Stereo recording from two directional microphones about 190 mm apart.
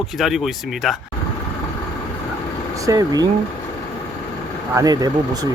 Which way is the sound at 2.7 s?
15° right (ahead or behind).